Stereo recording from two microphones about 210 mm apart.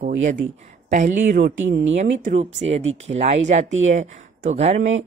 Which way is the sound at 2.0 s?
30° right (ahead or behind).